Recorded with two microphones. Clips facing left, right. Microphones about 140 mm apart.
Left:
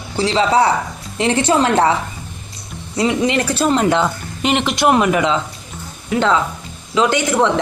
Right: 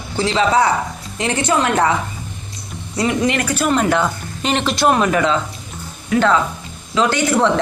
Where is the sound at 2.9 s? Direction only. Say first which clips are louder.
Left 1 dB; 20° left (ahead or behind).